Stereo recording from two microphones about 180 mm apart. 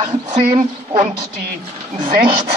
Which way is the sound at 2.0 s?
55° right (ahead or behind).